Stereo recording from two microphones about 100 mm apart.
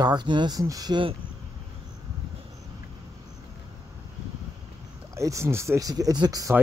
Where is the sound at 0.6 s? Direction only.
40° right (ahead or behind).